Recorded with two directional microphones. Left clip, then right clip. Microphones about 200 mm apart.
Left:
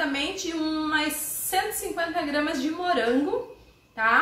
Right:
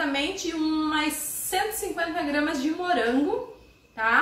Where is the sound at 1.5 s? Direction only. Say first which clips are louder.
Even; 5° left (ahead or behind).